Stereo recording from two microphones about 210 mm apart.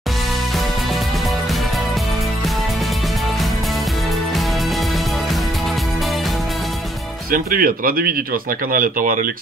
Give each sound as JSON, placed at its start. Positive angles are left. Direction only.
{"t": 7.2, "sound": "speech", "side_deg": -45}